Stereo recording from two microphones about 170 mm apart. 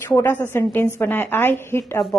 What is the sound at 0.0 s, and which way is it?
Speech, 10° left (ahead or behind).